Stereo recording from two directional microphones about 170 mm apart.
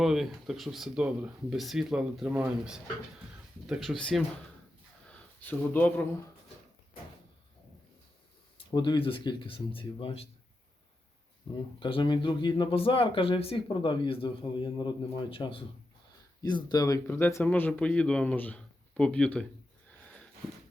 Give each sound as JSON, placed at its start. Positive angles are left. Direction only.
{"t": 0.0, "sound": "speech", "side_deg": 0}
{"t": 5.5, "sound": "speech", "side_deg": 10}
{"t": 8.5, "sound": "speech", "side_deg": 25}
{"t": 11.8, "sound": "speech", "side_deg": 30}